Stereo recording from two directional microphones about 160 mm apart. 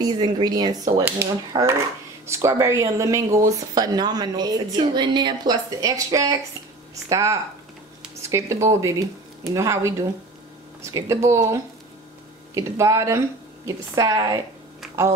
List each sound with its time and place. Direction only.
0.0 s speech: 25° right (ahead or behind)